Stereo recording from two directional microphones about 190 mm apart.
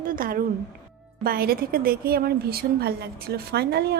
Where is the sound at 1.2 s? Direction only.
50° right (ahead or behind).